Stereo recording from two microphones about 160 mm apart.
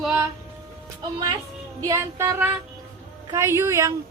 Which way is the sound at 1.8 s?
15° right (ahead or behind).